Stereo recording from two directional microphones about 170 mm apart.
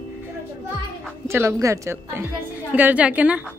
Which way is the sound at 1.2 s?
15° right (ahead or behind).